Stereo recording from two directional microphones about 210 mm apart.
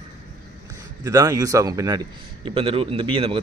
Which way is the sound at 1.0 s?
15° right (ahead or behind).